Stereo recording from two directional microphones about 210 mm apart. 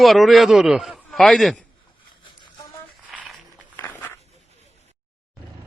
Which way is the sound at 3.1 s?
Centre (ahead or behind).